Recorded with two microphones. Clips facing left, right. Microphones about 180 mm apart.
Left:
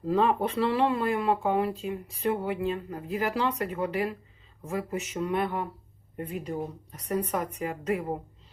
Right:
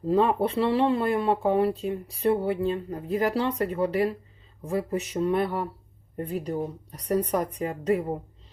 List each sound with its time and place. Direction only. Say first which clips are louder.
0.1 s speech: right 2 dB; 30° right (ahead or behind)